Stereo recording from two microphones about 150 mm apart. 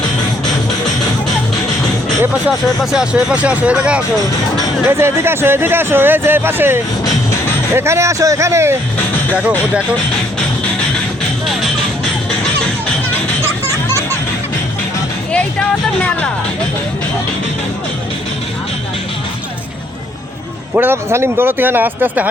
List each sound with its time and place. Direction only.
2.9 s speech: 5° right (ahead or behind)
15.3 s music: 10° left (ahead or behind)
20.7 s speech: 15° right (ahead or behind)